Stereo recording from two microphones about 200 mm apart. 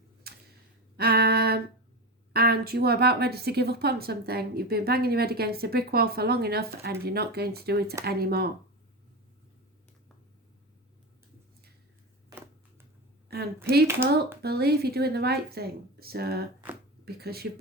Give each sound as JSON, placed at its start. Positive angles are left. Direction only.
{"t": 0.3, "sound": "a sound", "side_deg": -50}
{"t": 2.3, "sound": "speech", "side_deg": -50}
{"t": 13.2, "sound": "a woman's voice", "side_deg": -50}